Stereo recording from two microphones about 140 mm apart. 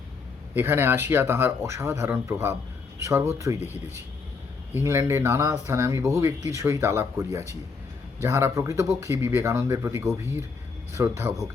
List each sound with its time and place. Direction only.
0.5 s speech: 15° right (ahead or behind)
4.7 s speech: 20° right (ahead or behind)